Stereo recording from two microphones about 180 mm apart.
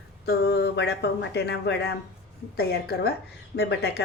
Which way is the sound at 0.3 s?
65° left (ahead or behind).